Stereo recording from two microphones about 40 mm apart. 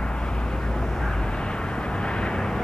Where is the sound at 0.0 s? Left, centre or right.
Left.